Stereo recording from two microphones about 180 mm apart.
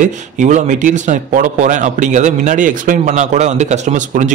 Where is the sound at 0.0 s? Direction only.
45° right (ahead or behind).